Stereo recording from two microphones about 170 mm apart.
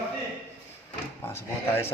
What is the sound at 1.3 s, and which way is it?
Speech, 15° left (ahead or behind).